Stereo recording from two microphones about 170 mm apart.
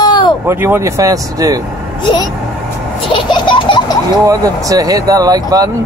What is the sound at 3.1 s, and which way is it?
Baby laughter, 25° left (ahead or behind).